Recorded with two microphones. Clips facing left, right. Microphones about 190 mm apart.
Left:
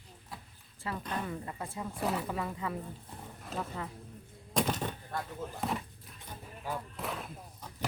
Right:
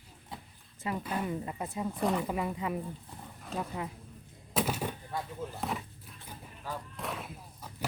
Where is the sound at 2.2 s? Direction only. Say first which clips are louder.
Right 3 dB; 15° right (ahead or behind).